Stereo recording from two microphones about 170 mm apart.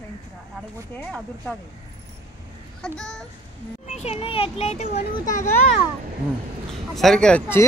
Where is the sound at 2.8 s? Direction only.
5° left (ahead or behind).